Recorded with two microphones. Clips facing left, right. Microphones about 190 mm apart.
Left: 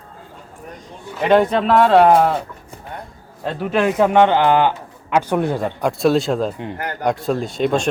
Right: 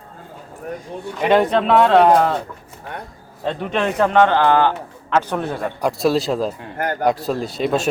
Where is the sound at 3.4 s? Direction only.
5° left (ahead or behind).